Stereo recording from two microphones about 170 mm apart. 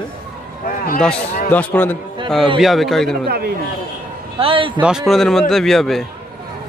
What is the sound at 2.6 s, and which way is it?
Speech, centre (ahead or behind).